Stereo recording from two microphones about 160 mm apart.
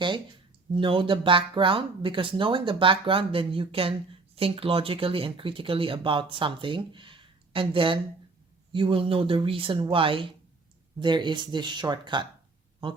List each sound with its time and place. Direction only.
0.8 s speech: 35° right (ahead or behind)